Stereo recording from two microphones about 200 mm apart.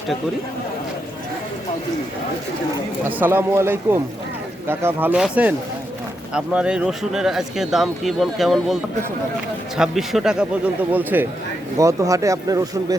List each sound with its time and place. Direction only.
3.0 s speech: 10° right (ahead or behind)